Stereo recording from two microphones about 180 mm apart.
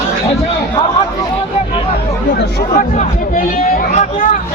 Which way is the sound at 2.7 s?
45° left (ahead or behind).